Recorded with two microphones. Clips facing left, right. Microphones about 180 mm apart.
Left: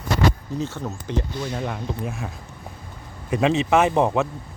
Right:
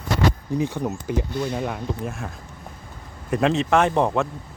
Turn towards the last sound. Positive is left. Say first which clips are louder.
# left 1 dB
turn(degrees=5)  # may be behind; listen again after turning